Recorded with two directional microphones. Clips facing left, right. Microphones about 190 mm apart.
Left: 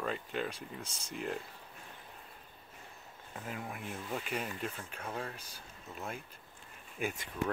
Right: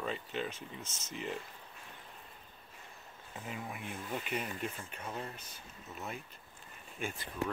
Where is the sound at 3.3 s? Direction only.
Centre (ahead or behind).